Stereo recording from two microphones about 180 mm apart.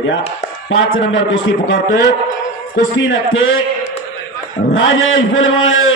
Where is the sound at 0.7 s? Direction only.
90° left.